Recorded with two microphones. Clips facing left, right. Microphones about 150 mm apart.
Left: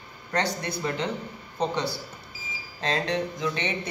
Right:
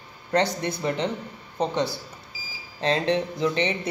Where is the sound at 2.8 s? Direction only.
30° right (ahead or behind).